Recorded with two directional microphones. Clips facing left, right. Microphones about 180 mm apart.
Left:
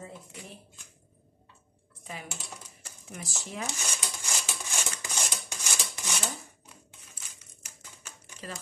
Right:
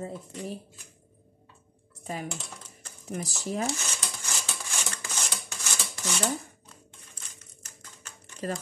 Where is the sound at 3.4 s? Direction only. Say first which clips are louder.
Right 7 dB; 40° right (ahead or behind).